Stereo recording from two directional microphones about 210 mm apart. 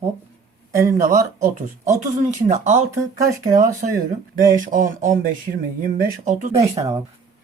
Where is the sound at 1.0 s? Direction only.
40° right (ahead or behind).